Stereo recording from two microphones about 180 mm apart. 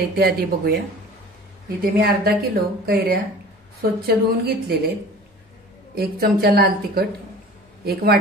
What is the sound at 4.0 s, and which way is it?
Speech, 60° right (ahead or behind).